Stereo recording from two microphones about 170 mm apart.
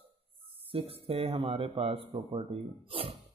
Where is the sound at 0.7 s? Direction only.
35° right (ahead or behind).